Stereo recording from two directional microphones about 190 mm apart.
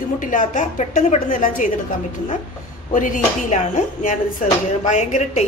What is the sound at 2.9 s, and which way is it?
Speech, 40° left (ahead or behind).